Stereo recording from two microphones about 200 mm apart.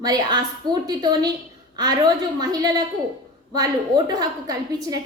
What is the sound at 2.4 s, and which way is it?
A woman's voice, 20° right (ahead or behind).